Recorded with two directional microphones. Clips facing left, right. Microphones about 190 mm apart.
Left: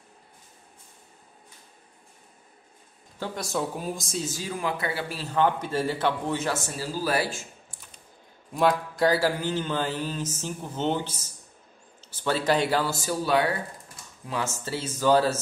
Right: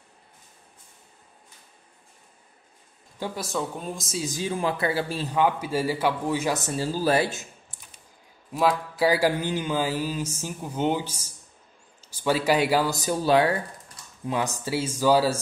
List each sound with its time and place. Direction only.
3.2 s speech: centre (ahead or behind)
4.3 s speech: 20° right (ahead or behind)
4.6 s speech: 30° right (ahead or behind)
5.3 s mantra: 10° right (ahead or behind)
8.5 s mantra: 5° right (ahead or behind)
14.2 s mantra: 15° right (ahead or behind)